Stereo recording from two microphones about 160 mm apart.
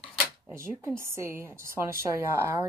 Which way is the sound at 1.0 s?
15° right (ahead or behind).